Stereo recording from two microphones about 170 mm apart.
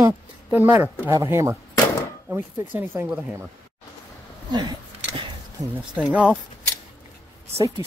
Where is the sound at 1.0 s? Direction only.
15° right (ahead or behind).